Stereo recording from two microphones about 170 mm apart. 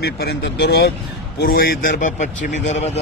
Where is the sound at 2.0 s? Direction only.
45° left (ahead or behind).